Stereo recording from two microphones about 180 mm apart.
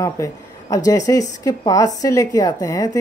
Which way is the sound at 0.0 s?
20° left (ahead or behind).